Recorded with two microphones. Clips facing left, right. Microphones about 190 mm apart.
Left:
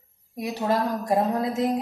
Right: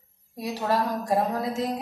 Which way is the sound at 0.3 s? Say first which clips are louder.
Left 2 dB; 15° left (ahead or behind).